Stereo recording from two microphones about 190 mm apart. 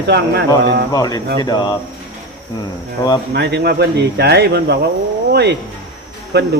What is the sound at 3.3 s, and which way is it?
Speech, 60° right (ahead or behind).